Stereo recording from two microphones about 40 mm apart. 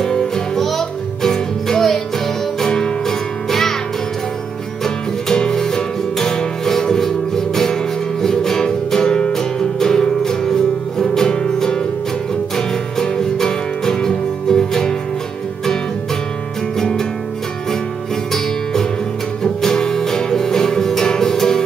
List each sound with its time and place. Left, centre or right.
0.6 s music: centre
4.8 s music: centre
18.3 s music: centre